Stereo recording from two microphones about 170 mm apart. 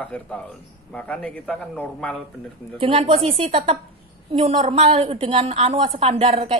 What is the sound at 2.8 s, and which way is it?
A woman's voice, 30° right (ahead or behind).